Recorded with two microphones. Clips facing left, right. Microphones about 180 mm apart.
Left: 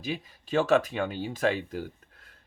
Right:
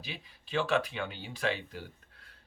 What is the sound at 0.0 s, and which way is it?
Speech, 45° left (ahead or behind).